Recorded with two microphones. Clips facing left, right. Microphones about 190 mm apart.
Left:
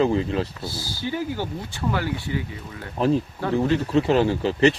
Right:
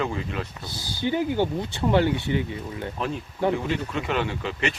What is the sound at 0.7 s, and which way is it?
Speech, 20° right (ahead or behind).